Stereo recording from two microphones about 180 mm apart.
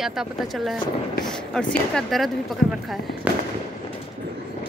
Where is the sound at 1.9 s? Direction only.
Centre (ahead or behind).